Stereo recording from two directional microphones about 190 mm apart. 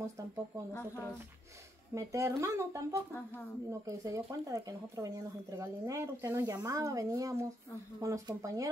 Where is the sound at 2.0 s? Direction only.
15° right (ahead or behind).